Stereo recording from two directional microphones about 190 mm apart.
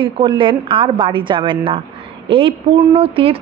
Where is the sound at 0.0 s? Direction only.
25° right (ahead or behind).